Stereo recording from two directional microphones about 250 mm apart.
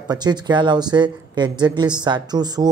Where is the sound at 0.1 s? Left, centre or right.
Centre.